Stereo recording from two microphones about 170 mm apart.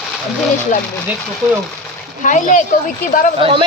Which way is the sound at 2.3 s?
50° left (ahead or behind).